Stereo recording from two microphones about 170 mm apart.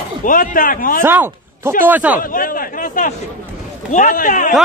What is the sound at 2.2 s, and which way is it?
A man's voice, 55° left (ahead or behind).